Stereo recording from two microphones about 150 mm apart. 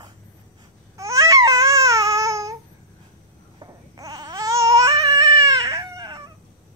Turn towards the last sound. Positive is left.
turn(degrees=-20)  # may be behind; listen again after turning